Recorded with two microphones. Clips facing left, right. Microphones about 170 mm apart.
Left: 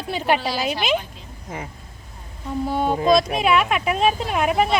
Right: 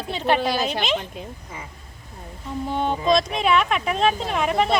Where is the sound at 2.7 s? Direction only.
5° left (ahead or behind).